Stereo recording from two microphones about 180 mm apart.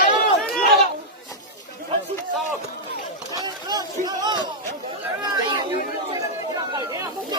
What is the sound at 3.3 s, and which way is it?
Run, 20° right (ahead or behind).